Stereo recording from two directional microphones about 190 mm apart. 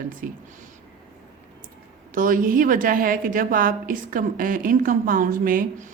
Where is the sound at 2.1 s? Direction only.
45° right (ahead or behind).